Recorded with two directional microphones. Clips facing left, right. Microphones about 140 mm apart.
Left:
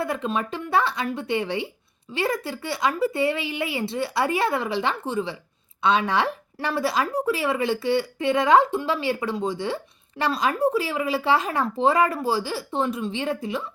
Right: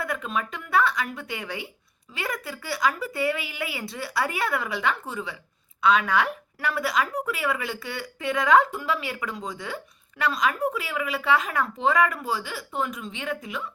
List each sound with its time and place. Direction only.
0.0 s a woman's voice: 30° left (ahead or behind)